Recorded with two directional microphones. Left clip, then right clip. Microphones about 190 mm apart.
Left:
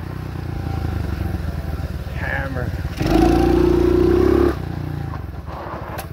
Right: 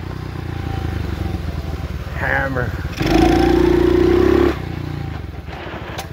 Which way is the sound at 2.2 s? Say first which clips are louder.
Right 6 dB; 50° right (ahead or behind).